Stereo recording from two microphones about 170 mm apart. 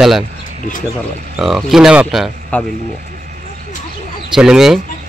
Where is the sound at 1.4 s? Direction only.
Centre (ahead or behind).